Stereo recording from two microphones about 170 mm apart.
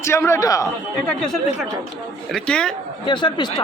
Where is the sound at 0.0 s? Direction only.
15° left (ahead or behind).